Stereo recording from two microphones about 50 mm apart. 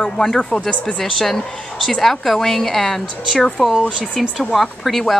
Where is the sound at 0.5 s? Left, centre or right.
Left.